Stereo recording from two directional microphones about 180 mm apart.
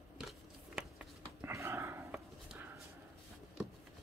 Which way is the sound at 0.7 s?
5° right (ahead or behind).